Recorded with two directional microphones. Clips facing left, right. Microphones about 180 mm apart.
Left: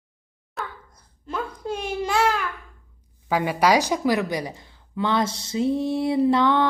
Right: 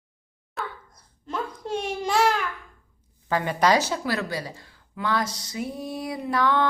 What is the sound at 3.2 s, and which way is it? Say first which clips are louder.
A woman's voice: left 2 dB; 10° left (ahead or behind).